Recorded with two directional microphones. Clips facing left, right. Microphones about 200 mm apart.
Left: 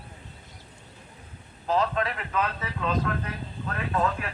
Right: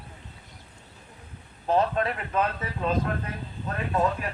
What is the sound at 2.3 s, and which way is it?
Speech, 30° right (ahead or behind).